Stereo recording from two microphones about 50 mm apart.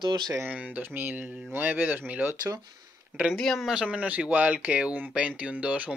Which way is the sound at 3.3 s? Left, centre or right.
Centre.